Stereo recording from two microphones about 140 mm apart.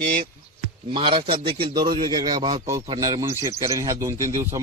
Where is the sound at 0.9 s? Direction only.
35° right (ahead or behind).